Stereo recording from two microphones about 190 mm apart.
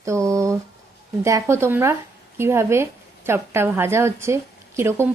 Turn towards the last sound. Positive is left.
turn(degrees=-15)  # may be behind; listen again after turning